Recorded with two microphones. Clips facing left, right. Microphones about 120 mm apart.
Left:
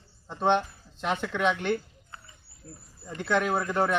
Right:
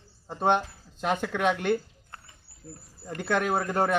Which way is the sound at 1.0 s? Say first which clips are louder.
Right 2 dB; 45° right (ahead or behind).